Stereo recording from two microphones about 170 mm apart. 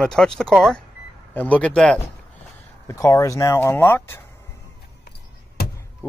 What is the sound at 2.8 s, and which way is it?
Speech, 20° left (ahead or behind).